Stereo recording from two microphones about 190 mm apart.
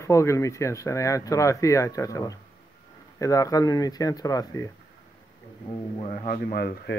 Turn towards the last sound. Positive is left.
turn(degrees=55)  # may be behind; listen again after turning